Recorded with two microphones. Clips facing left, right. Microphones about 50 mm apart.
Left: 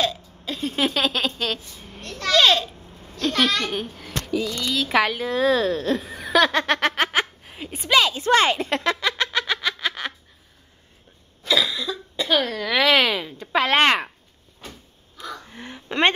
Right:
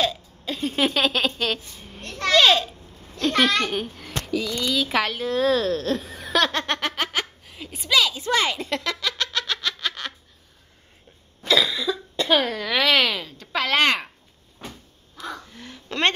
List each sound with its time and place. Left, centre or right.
0.0 s hiccup: centre
2.0 s a sound: right
2.3 s a sound: centre
3.6 s a child's voice: centre
4.6 s a child's voice: centre
6.8 s snicker: left
7.8 s music: left; by 10.1 s centre
11.4 s cough: centre
12.3 s speech: centre; by 14.0 s left
15.5 s a sound: left